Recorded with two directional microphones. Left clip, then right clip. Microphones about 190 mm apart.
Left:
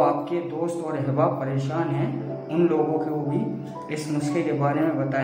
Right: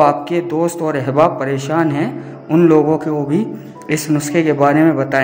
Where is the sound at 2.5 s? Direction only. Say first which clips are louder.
Right 11 dB; 40° right (ahead or behind).